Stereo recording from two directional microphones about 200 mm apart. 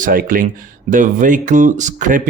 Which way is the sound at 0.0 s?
45° right (ahead or behind).